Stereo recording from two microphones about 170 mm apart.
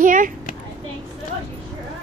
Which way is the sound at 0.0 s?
50° right (ahead or behind).